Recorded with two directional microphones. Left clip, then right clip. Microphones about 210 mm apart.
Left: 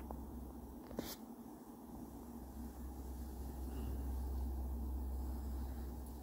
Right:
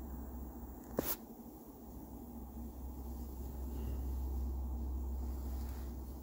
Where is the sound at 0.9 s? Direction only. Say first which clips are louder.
Right 7 dB; 35° right (ahead or behind).